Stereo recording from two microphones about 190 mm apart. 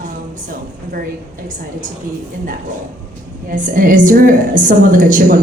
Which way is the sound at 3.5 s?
45° right (ahead or behind).